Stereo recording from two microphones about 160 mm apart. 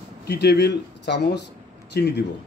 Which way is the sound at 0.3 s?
90° left.